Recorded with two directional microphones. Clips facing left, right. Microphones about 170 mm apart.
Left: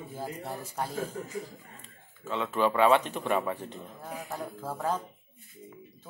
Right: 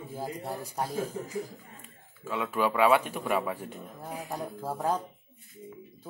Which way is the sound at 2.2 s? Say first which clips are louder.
Left 1 dB; 10° right (ahead or behind).